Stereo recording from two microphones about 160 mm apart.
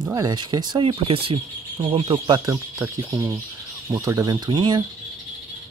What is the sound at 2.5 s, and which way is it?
Speech, 20° right (ahead or behind).